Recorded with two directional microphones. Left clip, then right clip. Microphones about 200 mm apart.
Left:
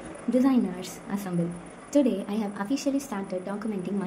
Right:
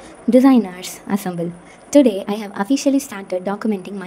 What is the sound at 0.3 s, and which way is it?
A woman's voice, 50° right (ahead or behind).